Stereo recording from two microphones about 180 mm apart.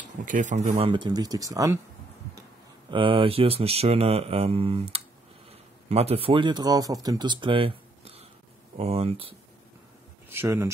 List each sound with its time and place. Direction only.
0.2 s speech: 45° right (ahead or behind); by 1.8 s 20° right (ahead or behind)
2.9 s speech: 30° right (ahead or behind)
10.3 s speech: 15° right (ahead or behind)